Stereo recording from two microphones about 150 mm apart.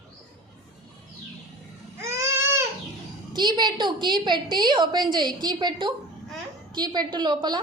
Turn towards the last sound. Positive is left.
turn(degrees=-30)  # may be behind; listen again after turning